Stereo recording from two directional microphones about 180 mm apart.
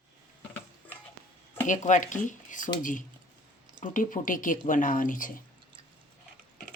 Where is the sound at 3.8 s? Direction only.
45° left (ahead or behind).